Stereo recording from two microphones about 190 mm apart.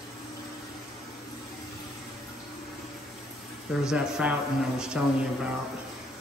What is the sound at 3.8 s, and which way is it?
Speech, 5° right (ahead or behind).